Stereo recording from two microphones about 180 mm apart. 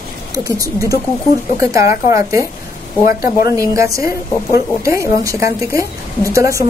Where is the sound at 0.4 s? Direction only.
20° right (ahead or behind).